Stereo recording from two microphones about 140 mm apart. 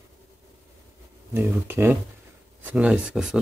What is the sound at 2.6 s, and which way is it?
Speech, 10° right (ahead or behind).